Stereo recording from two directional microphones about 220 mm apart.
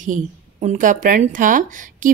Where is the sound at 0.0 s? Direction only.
35° right (ahead or behind).